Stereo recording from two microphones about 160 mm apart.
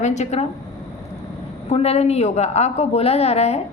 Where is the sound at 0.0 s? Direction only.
45° left (ahead or behind).